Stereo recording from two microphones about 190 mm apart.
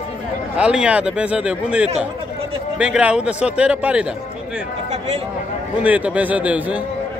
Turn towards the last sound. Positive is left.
turn(degrees=-5)  # may be behind; listen again after turning